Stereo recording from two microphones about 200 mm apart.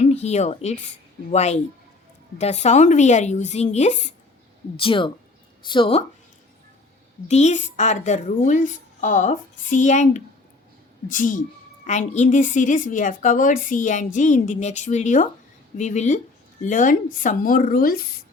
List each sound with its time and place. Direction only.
0.0 s a woman's voice: 35° left (ahead or behind)
7.3 s a woman's voice: 35° left (ahead or behind)